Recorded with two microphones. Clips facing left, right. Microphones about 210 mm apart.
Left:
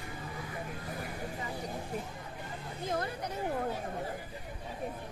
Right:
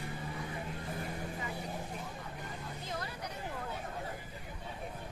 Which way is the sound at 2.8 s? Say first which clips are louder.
Left 9 dB; 50° left (ahead or behind).